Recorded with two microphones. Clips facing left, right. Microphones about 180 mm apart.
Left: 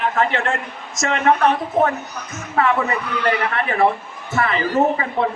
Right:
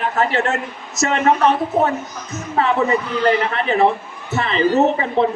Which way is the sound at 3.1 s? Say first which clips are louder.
Right 3 dB; 30° right (ahead or behind).